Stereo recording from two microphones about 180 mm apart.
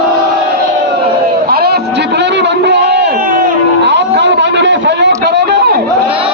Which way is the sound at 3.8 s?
75° right (ahead or behind).